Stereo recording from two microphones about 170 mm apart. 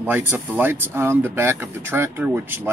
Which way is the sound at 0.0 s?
10° right (ahead or behind).